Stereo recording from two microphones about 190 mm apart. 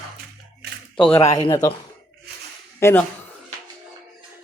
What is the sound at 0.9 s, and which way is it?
Speech, 5° left (ahead or behind).